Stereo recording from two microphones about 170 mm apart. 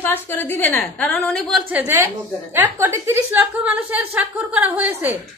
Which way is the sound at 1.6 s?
10° right (ahead or behind).